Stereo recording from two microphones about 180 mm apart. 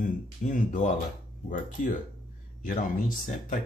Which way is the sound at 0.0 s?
45° left (ahead or behind).